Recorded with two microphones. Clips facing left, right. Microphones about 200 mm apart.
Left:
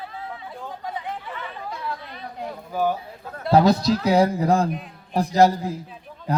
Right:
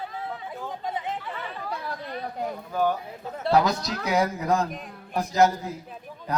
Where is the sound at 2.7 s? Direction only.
10° left (ahead or behind).